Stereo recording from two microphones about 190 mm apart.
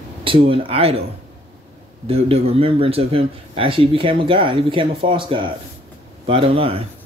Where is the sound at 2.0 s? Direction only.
30° right (ahead or behind).